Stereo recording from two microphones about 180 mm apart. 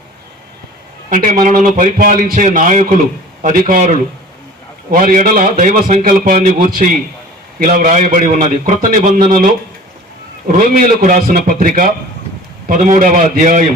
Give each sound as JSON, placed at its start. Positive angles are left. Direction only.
{"t": 1.1, "sound": "a man's voice", "side_deg": -45}